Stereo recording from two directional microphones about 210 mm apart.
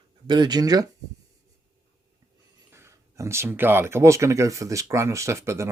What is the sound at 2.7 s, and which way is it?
Speech, 15° right (ahead or behind).